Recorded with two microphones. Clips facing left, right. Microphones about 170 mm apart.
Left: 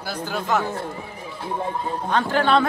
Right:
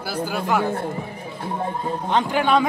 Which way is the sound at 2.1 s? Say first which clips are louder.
Even; 15° right (ahead or behind).